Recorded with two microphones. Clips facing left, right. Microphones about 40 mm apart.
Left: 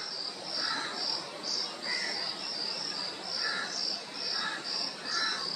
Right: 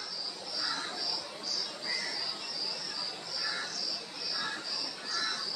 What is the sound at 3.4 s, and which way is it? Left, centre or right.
Insect, centre.